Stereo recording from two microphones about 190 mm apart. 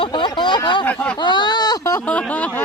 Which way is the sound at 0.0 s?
25° left (ahead or behind).